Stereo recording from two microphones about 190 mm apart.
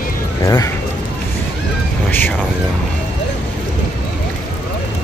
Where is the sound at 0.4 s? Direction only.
15° left (ahead or behind).